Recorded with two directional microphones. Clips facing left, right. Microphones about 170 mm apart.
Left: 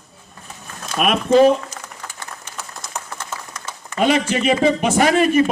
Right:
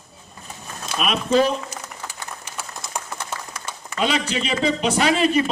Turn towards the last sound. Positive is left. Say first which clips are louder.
# left 4 dB
turn(degrees=50)  # may be behind; listen again after turning